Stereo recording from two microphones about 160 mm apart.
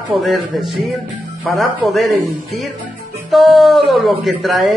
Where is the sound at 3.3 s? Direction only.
Centre (ahead or behind).